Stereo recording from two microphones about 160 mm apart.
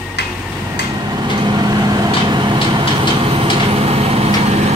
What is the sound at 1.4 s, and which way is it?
Vehicle, 25° right (ahead or behind).